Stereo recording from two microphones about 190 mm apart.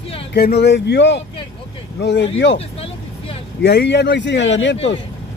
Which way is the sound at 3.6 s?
60° left (ahead or behind).